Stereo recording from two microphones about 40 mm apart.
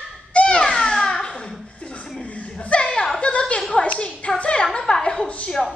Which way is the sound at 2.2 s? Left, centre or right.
Left.